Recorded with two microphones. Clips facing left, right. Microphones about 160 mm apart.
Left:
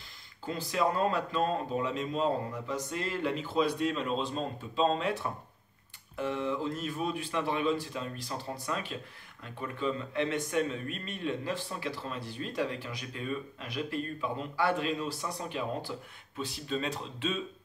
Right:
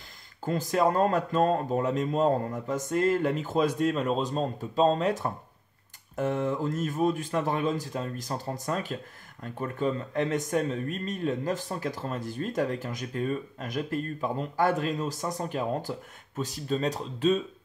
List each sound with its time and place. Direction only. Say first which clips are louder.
0.5 s speech: right 5 dB; 45° right (ahead or behind)